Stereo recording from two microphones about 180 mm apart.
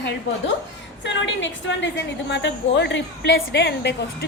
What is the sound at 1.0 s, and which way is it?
A woman's voice, 85° left.